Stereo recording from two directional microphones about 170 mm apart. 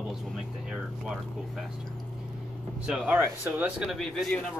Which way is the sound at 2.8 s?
10° right (ahead or behind).